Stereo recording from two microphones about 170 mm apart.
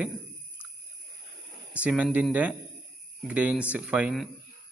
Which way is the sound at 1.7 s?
10° right (ahead or behind).